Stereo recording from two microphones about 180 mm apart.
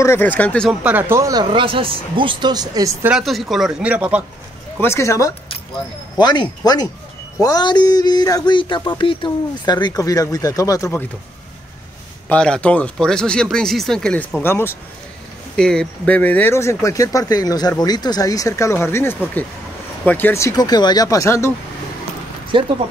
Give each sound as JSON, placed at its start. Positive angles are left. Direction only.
{"t": 0.0, "sound": "speech", "side_deg": 10}
{"t": 0.7, "sound": "speech", "side_deg": -10}
{"t": 3.1, "sound": "speech", "side_deg": 0}
{"t": 4.7, "sound": "speech", "side_deg": 15}
{"t": 12.3, "sound": "speech", "side_deg": 5}
{"t": 22.5, "sound": "speech", "side_deg": -25}